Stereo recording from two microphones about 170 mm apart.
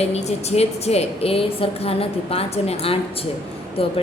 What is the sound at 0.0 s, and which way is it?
A woman's voice, 40° left (ahead or behind).